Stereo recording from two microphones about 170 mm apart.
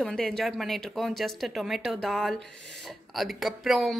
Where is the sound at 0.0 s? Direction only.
5° left (ahead or behind).